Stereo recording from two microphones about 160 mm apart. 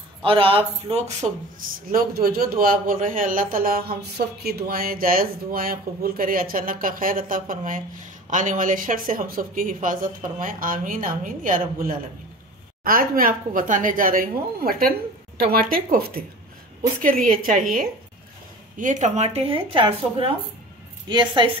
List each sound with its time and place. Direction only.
0.2 s speech: 35° right (ahead or behind)
1.9 s a man's voice: 65° right (ahead or behind)
18.8 s a woman's voice: 50° right (ahead or behind); by 21.5 s 30° right (ahead or behind)